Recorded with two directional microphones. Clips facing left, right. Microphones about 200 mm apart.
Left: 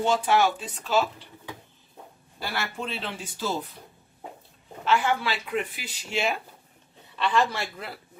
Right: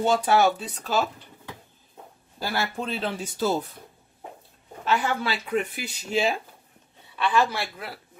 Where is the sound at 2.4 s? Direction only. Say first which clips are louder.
Right 3 dB; 40° right (ahead or behind).